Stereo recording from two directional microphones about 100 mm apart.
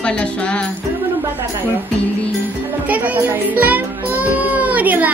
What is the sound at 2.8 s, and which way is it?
Music, 15° right (ahead or behind).